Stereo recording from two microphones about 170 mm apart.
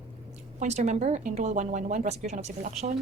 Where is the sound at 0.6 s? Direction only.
45° right (ahead or behind).